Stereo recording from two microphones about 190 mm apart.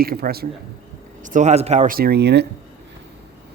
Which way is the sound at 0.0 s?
55° right (ahead or behind).